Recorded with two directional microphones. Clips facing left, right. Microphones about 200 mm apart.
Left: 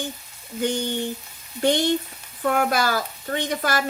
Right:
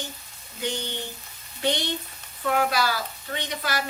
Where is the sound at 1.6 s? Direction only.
45° left (ahead or behind).